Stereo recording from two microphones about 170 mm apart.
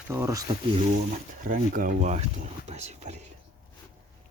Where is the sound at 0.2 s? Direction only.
20° right (ahead or behind).